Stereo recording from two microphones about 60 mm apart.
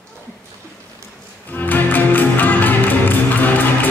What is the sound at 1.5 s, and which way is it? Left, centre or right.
Music, left.